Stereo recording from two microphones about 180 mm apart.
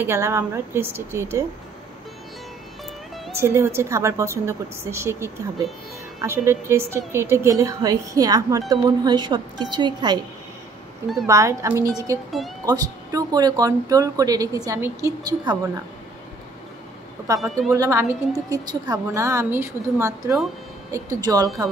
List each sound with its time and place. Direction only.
0.0 s a woman's voice: 15° right (ahead or behind)
3.3 s a woman's voice: 15° right (ahead or behind)
11.2 s a woman's voice: 15° right (ahead or behind)
17.4 s speech: centre (ahead or behind)
17.7 s a woman's voice: 15° right (ahead or behind)